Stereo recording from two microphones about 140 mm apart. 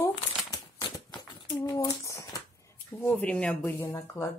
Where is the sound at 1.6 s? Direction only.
30° left (ahead or behind).